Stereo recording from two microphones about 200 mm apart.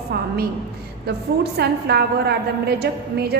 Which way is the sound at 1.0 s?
55° right (ahead or behind).